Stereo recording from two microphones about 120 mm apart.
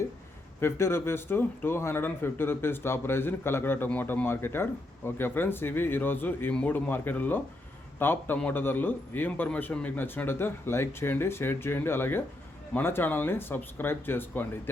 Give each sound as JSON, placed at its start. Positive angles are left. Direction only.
{"t": 0.6, "sound": "speech", "side_deg": 20}